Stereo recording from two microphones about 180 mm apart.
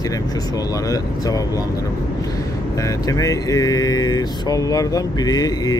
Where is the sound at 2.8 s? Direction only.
20° left (ahead or behind).